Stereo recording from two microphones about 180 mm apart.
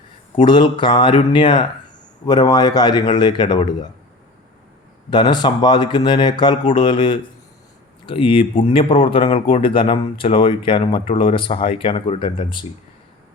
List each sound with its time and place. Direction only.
0.3 s speech: 25° left (ahead or behind)
5.1 s speech: 25° left (ahead or behind)